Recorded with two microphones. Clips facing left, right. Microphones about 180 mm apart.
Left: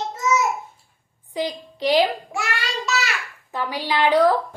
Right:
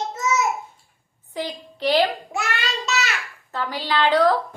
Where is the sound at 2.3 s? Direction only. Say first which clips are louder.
Even; 20° right (ahead or behind).